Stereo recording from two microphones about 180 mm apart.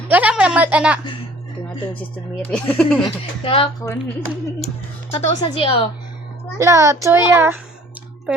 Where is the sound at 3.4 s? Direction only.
30° left (ahead or behind).